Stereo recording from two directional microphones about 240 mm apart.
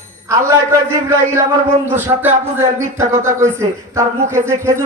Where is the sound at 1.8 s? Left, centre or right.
Centre.